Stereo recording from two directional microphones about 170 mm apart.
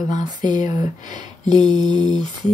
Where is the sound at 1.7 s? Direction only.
25° right (ahead or behind).